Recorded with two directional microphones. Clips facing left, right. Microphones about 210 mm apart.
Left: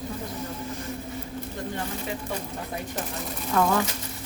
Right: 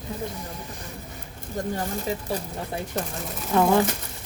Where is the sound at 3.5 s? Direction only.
25° right (ahead or behind).